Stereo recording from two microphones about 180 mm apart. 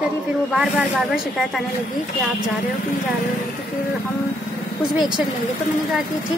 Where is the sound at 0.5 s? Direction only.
5° right (ahead or behind).